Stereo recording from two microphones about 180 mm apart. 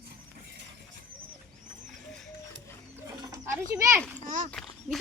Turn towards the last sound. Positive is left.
turn(degrees=0)  # may be behind; listen again after turning